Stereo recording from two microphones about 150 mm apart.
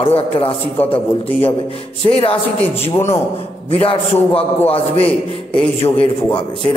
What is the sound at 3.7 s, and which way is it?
A man's voice, 40° left (ahead or behind).